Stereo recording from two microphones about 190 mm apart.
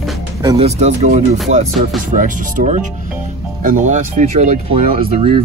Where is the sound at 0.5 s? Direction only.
35° right (ahead or behind).